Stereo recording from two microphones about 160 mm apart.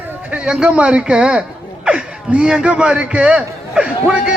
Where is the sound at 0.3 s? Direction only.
5° right (ahead or behind).